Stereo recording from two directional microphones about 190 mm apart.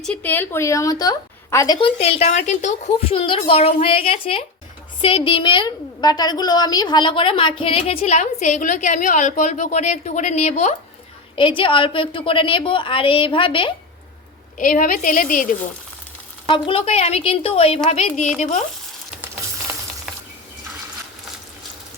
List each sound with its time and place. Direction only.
0.0 s a woman's voice: 5° left (ahead or behind)
2.0 s a woman's voice: 35° left (ahead or behind)
11.3 s a woman's voice: 25° left (ahead or behind)
14.6 s a woman's voice: 45° left (ahead or behind)
16.5 s a woman's voice: 30° left (ahead or behind)
19.2 s frying: 10° right (ahead or behind)